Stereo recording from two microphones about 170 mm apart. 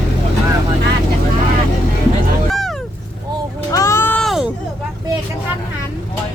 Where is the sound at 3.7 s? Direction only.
15° left (ahead or behind); by 4.5 s centre (ahead or behind).